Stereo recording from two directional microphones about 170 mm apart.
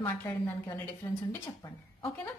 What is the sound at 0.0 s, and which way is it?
Speech, 10° left (ahead or behind).